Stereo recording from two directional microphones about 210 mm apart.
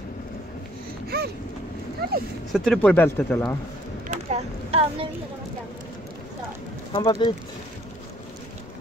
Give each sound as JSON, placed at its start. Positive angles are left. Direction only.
{"t": 2.0, "sound": "speech", "side_deg": -45}
{"t": 2.5, "sound": "speech", "side_deg": 5}
{"t": 4.1, "sound": "a sound", "side_deg": -30}
{"t": 6.9, "sound": "speech", "side_deg": 25}